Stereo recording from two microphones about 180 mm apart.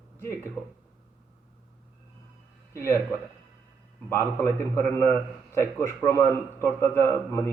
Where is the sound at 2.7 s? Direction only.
15° left (ahead or behind).